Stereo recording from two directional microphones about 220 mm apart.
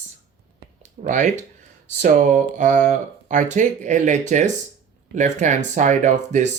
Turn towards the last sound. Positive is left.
turn(degrees=-35)  # may be behind; listen again after turning